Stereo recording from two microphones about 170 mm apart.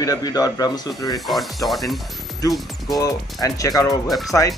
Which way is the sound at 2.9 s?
20° left (ahead or behind).